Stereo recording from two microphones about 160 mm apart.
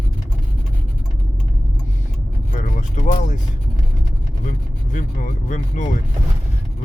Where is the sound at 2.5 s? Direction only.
50° left (ahead or behind).